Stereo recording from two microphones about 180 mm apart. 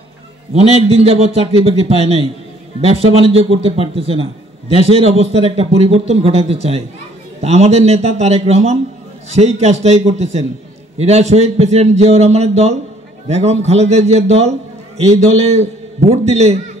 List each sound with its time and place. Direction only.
0.5 s a man's voice: 35° right (ahead or behind)